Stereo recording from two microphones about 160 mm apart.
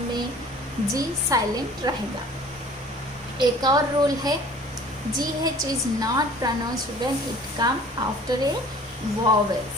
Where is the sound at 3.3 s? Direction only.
25° right (ahead or behind).